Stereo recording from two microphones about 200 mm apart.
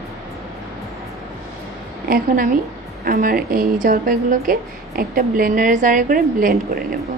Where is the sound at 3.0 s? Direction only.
45° right (ahead or behind).